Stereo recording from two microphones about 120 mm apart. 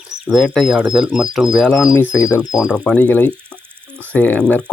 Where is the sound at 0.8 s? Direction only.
45° right (ahead or behind).